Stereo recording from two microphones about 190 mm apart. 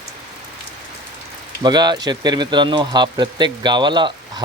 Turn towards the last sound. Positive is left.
turn(degrees=-25)  # may be behind; listen again after turning